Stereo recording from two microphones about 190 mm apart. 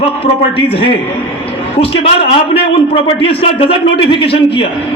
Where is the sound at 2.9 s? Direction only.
30° left (ahead or behind).